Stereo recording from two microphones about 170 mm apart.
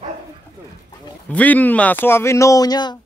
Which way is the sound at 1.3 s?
10° left (ahead or behind).